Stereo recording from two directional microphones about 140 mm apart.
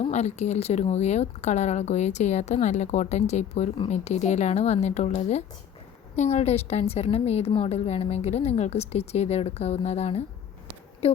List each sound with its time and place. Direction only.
0.0 s a woman's voice: 50° left (ahead or behind)